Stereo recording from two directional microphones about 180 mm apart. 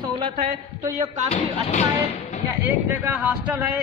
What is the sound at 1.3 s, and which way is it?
Speech, 40° left (ahead or behind).